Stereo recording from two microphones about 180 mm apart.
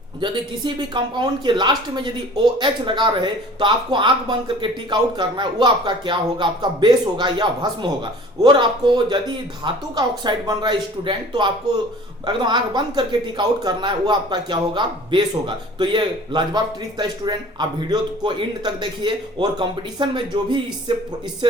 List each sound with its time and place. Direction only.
0.2 s speech: 25° right (ahead or behind)